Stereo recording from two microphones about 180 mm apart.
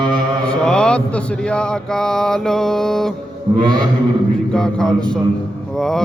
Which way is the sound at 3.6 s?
25° right (ahead or behind).